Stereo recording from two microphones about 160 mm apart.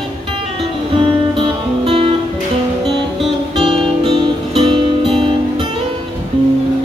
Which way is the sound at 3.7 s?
30° right (ahead or behind).